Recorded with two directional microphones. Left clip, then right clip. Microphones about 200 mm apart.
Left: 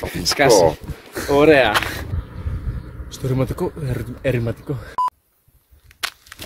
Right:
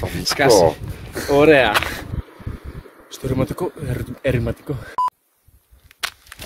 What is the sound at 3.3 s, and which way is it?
Speech, 5° right (ahead or behind).